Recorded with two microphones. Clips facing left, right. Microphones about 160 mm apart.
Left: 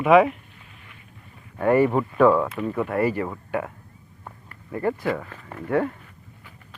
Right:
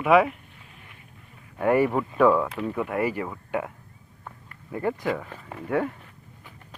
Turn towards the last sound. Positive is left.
turn(degrees=-10)  # may be behind; listen again after turning